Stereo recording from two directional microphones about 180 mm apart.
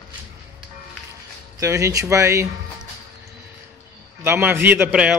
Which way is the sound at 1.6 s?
15° right (ahead or behind).